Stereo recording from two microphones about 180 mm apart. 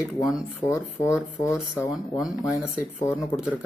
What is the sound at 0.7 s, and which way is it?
Speech, 15° left (ahead or behind).